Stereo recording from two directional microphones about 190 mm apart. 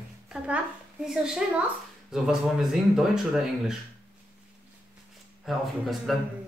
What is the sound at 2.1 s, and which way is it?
Speech, centre (ahead or behind).